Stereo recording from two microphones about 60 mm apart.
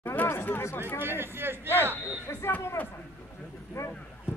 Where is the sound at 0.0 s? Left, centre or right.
Left.